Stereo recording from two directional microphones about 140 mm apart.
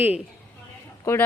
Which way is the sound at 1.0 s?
20° left (ahead or behind).